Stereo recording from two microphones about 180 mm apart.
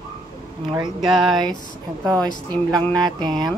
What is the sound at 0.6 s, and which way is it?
Speech, 25° right (ahead or behind).